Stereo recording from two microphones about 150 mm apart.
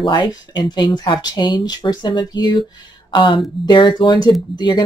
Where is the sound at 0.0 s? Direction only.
30° left (ahead or behind).